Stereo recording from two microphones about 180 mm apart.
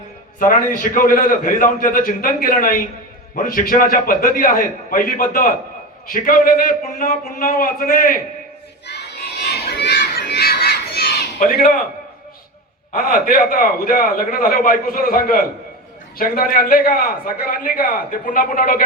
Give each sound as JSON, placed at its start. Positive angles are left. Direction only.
{"t": 0.3, "sound": "a man's voice", "side_deg": 50}
{"t": 8.9, "sound": "crowd", "side_deg": 65}
{"t": 12.9, "sound": "a man's voice", "side_deg": 50}